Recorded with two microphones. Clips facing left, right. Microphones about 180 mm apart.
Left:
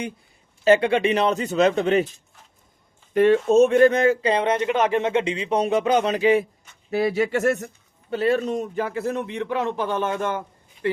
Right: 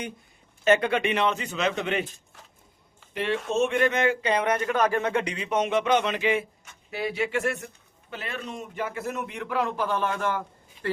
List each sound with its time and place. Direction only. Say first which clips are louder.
0.6 s speech: left 5 dB; 30° left (ahead or behind)
3.2 s a man's voice: left 10 dB; 40° left (ahead or behind); by 10.4 s 20° left (ahead or behind)